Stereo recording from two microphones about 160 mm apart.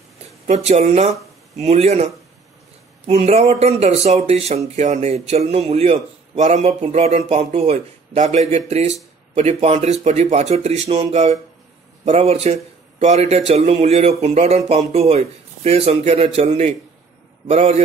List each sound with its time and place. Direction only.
0.5 s speech: 40° right (ahead or behind)
3.1 s a man's voice: 40° right (ahead or behind)